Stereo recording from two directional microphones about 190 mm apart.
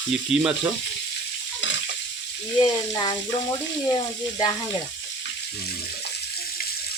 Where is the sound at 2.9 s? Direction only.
25° left (ahead or behind).